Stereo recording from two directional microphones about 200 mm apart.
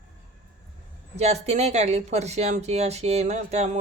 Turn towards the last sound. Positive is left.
turn(degrees=-35)  # may be behind; listen again after turning